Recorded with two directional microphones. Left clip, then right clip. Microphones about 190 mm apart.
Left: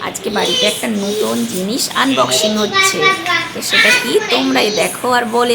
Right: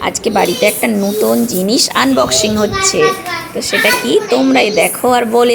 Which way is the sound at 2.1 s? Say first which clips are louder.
Right 1 dB; 15° right (ahead or behind).